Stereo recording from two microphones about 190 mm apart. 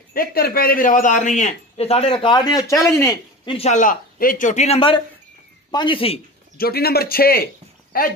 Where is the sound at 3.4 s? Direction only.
30° left (ahead or behind).